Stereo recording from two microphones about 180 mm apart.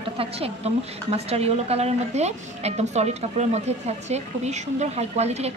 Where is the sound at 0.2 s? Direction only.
35° right (ahead or behind).